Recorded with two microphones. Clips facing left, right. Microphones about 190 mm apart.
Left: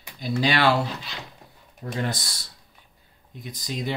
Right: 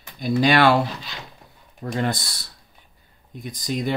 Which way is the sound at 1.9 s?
60° right (ahead or behind).